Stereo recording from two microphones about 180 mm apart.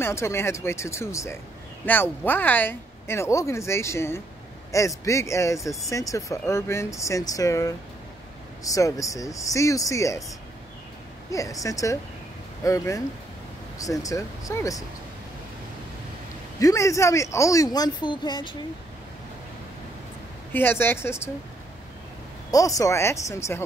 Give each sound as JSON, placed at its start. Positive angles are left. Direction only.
{"t": 0.0, "sound": "speech", "side_deg": 15}
{"t": 11.3, "sound": "speech", "side_deg": 20}
{"t": 16.5, "sound": "speech", "side_deg": 15}
{"t": 20.5, "sound": "speech", "side_deg": 10}
{"t": 22.5, "sound": "speech", "side_deg": 20}